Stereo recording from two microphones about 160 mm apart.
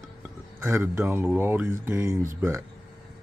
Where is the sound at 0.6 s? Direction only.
15° right (ahead or behind).